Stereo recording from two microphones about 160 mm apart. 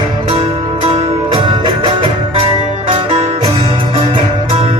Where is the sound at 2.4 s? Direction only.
45° right (ahead or behind).